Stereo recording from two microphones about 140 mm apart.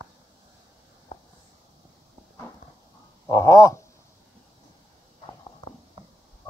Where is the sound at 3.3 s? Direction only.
20° left (ahead or behind).